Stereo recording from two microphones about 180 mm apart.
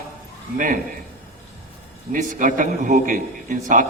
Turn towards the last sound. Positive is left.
turn(degrees=-45)  # may be behind; listen again after turning